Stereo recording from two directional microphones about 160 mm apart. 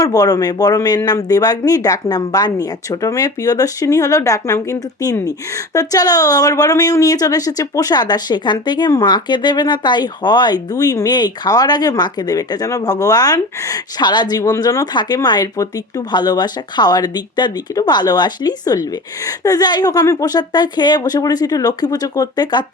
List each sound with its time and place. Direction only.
0.0 s speech: 25° left (ahead or behind)